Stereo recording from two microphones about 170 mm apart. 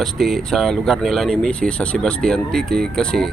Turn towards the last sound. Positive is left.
turn(degrees=5)  # may be behind; listen again after turning